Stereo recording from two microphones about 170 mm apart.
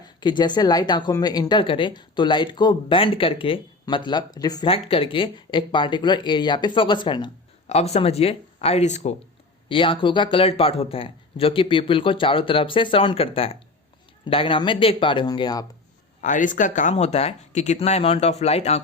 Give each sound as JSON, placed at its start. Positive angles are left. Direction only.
{"t": 0.0, "sound": "speech", "side_deg": 25}
{"t": 7.7, "sound": "speech", "side_deg": 40}
{"t": 9.6, "sound": "speech", "side_deg": 30}
{"t": 16.2, "sound": "speech", "side_deg": 50}